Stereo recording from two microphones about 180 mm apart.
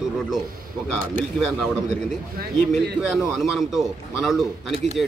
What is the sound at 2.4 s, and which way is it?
Speech, 55° right (ahead or behind).